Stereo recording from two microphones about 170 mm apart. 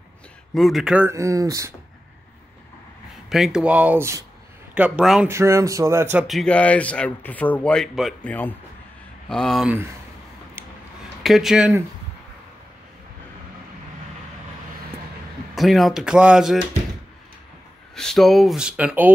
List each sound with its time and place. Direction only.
0.6 s speech: centre (ahead or behind)
1.0 s speech: 20° right (ahead or behind)
3.3 s speech: centre (ahead or behind)
5.3 s speech: 15° right (ahead or behind)
6.2 s speech: 5° left (ahead or behind)
11.2 s speech: centre (ahead or behind)
15.5 s speech: centre (ahead or behind)
17.9 s speech: 5° left (ahead or behind)